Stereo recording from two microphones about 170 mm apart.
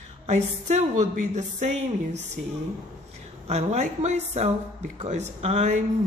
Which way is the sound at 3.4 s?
40° right (ahead or behind).